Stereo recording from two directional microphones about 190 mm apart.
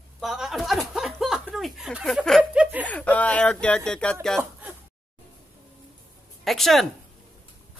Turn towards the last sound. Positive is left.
turn(degrees=0)  # may be behind; listen again after turning